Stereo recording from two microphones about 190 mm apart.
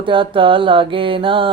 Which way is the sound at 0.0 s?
25° right (ahead or behind).